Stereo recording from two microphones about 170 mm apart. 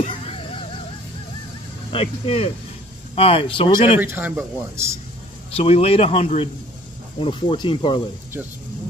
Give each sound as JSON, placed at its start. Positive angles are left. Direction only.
{"t": 0.0, "sound": "a sound", "side_deg": 35}
{"t": 1.9, "sound": "speech", "side_deg": 35}
{"t": 4.0, "sound": "speech", "side_deg": -10}
{"t": 5.5, "sound": "speech", "side_deg": 35}